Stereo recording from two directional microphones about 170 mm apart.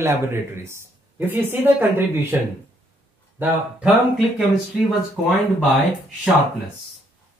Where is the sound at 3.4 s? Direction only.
5° right (ahead or behind).